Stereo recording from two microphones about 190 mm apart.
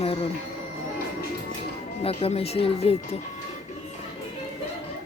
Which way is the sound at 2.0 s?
30° left (ahead or behind).